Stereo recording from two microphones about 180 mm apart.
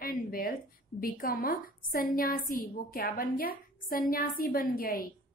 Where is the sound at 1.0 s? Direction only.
55° left (ahead or behind).